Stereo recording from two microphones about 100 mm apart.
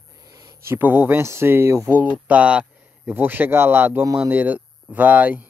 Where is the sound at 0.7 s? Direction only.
20° right (ahead or behind).